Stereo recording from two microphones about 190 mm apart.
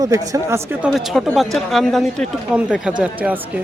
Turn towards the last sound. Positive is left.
turn(degrees=-5)  # may be behind; listen again after turning